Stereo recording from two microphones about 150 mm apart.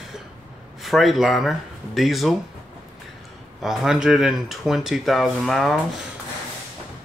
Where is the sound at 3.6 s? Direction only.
Centre (ahead or behind).